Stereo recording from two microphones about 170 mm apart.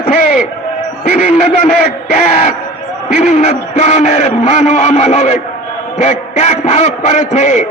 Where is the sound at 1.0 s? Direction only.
55° left (ahead or behind).